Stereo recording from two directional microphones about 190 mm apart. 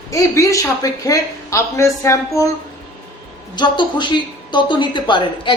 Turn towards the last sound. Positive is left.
turn(degrees=25)  # may be behind; listen again after turning